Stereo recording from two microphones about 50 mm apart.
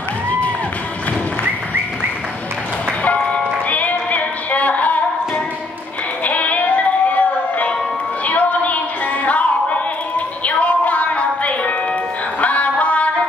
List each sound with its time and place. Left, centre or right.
3.0 s music: left